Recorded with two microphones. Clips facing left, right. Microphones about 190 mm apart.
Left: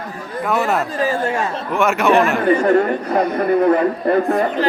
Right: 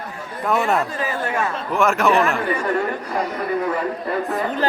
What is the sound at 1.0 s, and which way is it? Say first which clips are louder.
Speech: left 4 dB; 30° left (ahead or behind).